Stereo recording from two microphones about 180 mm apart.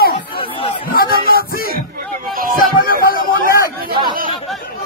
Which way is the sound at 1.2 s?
55° left (ahead or behind).